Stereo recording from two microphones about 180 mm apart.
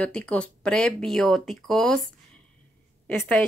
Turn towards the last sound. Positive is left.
turn(degrees=5)  # may be behind; listen again after turning